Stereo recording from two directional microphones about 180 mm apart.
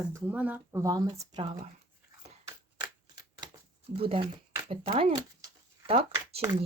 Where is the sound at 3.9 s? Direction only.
30° right (ahead or behind).